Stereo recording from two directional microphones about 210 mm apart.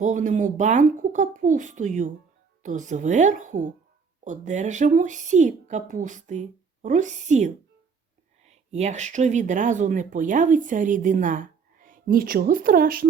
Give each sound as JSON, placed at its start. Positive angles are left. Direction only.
{"t": 0.0, "sound": "speech", "side_deg": -35}